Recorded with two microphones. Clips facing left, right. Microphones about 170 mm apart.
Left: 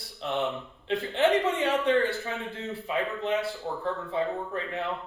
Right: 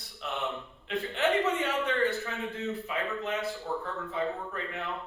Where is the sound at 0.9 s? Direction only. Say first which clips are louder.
Left 4 dB; 30° left (ahead or behind).